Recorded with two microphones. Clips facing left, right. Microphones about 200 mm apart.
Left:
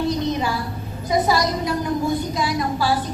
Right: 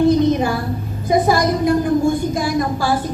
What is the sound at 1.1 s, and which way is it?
Speech, 55° right (ahead or behind).